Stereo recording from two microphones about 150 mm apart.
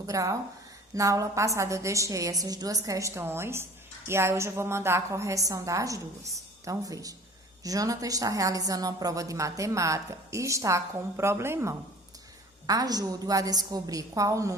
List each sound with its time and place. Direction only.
0.0 s a woman's voice: 20° right (ahead or behind)